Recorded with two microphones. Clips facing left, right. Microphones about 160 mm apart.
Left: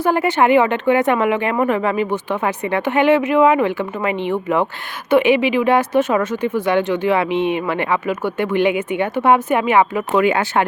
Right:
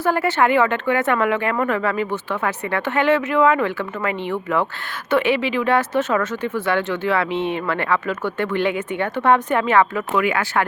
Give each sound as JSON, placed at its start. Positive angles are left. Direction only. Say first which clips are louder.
{"t": 0.0, "sound": "speech", "louder": "left 3 dB", "side_deg": 15}
{"t": 10.2, "sound": "speech", "louder": "left 4 dB", "side_deg": 25}